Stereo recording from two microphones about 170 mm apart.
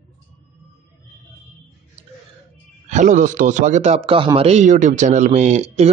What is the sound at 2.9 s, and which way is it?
A man's voice, 45° right (ahead or behind).